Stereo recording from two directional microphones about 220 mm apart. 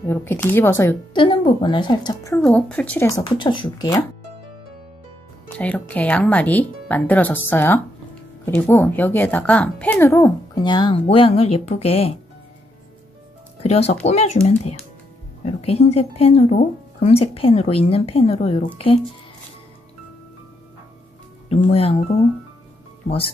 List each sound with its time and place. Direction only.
0.0 s speech: 10° left (ahead or behind)
1.1 s speech: 20° left (ahead or behind)
5.6 s speech: 5° left (ahead or behind); by 12.1 s 30° left (ahead or behind)
13.6 s speech: 30° left (ahead or behind)
15.4 s speech: 30° left (ahead or behind)
21.6 s speech: 25° left (ahead or behind)
23.0 s speech: 25° left (ahead or behind)